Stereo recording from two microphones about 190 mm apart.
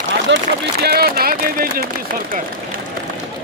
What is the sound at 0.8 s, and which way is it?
Speech, 55° right (ahead or behind).